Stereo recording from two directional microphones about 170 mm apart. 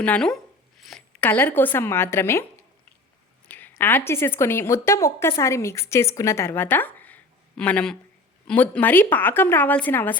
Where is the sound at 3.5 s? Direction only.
10° left (ahead or behind).